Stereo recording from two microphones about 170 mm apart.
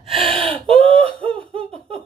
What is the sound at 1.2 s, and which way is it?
Laughter, 35° right (ahead or behind).